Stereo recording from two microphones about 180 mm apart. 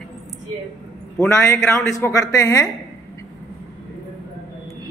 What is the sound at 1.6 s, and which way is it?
Speech, 5° left (ahead or behind).